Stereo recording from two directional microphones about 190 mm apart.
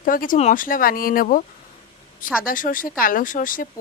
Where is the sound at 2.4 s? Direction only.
45° left (ahead or behind).